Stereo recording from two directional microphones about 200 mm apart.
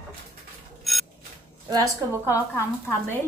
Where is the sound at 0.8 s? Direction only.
Centre (ahead or behind).